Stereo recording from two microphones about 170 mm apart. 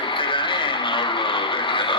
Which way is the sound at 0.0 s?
30° left (ahead or behind).